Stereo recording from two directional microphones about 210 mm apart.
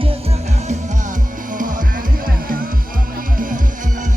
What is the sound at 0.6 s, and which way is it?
Music, 40° right (ahead or behind).